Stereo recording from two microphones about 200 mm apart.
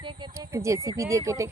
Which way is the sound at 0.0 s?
25° right (ahead or behind).